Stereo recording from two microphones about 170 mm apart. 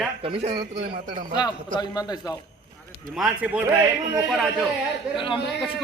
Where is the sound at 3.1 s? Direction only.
5° right (ahead or behind).